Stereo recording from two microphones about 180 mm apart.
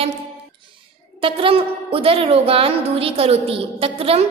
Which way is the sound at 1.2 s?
30° right (ahead or behind).